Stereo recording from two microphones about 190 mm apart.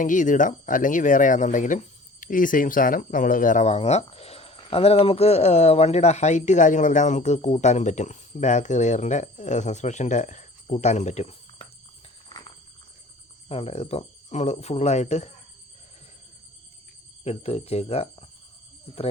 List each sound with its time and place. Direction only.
0.0 s speech: 45° left (ahead or behind)
13.5 s speech: 30° left (ahead or behind)
17.2 s speech: 35° left (ahead or behind)